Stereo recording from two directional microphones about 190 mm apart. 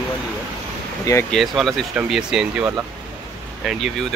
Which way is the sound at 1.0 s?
15° left (ahead or behind).